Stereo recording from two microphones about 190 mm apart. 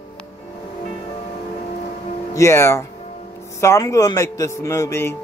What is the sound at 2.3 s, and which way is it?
A man's voice, 15° left (ahead or behind).